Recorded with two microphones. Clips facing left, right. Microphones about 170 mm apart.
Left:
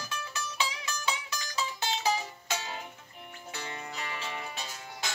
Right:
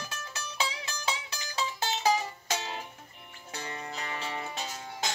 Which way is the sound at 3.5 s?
40° right (ahead or behind).